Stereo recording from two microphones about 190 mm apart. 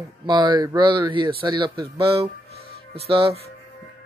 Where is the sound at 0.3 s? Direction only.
25° right (ahead or behind).